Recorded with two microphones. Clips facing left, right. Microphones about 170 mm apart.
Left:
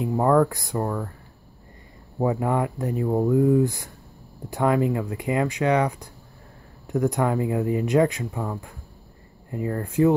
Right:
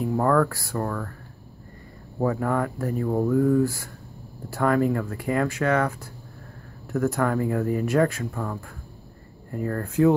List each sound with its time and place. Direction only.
0.2 s speech: 20° left (ahead or behind)
2.1 s speech: 15° left (ahead or behind)